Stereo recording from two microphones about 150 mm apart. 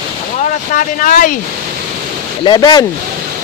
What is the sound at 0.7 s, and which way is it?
Speech, 60° left (ahead or behind).